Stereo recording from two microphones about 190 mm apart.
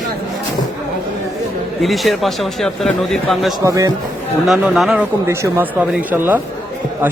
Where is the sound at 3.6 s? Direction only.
15° right (ahead or behind).